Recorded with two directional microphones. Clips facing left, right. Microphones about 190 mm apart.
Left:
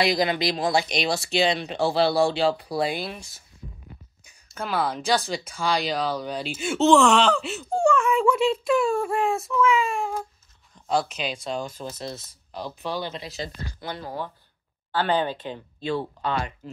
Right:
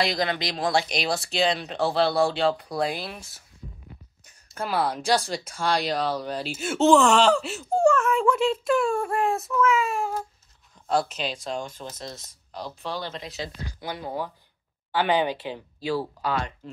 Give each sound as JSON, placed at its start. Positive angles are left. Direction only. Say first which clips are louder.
{"t": 0.0, "sound": "speech", "louder": "left 3 dB", "side_deg": 5}
{"t": 4.6, "sound": "speech", "louder": "even", "side_deg": 0}
{"t": 11.8, "sound": "speech", "louder": "left 4 dB", "side_deg": 30}
{"t": 12.3, "sound": "speech", "louder": "left 2 dB", "side_deg": 10}
{"t": 13.7, "sound": "speech", "louder": "right 2 dB", "side_deg": -15}
{"t": 16.3, "sound": "speech", "louder": "left 1 dB", "side_deg": 5}